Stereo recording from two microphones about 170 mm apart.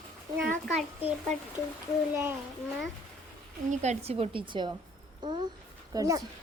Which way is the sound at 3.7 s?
40° right (ahead or behind).